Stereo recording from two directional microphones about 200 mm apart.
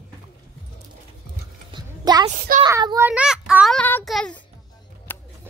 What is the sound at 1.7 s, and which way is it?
Music, 20° right (ahead or behind).